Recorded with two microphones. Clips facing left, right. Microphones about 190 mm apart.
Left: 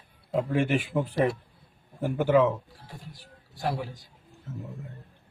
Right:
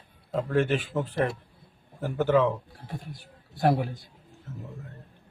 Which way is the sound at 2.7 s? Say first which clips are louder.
Right 6 dB; 55° right (ahead or behind).